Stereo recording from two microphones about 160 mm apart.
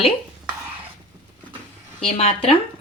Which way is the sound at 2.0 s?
40° left (ahead or behind).